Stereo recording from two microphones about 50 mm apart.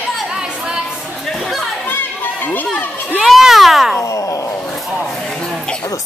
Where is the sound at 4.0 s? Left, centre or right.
Left.